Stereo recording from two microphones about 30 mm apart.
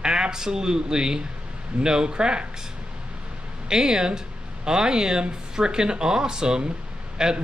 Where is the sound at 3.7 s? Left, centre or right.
Right.